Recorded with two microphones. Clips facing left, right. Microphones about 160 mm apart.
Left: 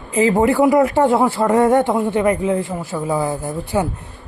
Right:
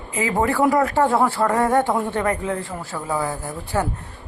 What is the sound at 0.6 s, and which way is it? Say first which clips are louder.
Speech: left 2 dB; 15° left (ahead or behind).